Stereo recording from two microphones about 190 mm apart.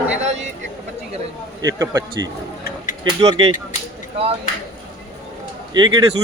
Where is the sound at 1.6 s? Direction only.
20° right (ahead or behind).